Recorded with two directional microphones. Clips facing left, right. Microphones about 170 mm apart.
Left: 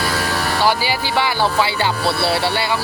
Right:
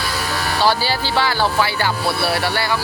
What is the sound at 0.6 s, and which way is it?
Speech, 15° left (ahead or behind).